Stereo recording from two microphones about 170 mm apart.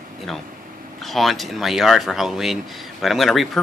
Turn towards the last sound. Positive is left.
turn(degrees=0)  # may be behind; listen again after turning